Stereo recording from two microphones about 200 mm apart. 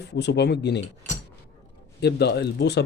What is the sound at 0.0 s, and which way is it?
Speech, 55° left (ahead or behind).